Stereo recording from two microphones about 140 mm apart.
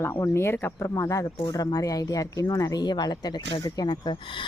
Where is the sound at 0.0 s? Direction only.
15° left (ahead or behind).